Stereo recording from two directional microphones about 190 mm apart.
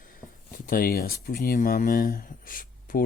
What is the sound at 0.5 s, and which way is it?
Speech, 50° left (ahead or behind).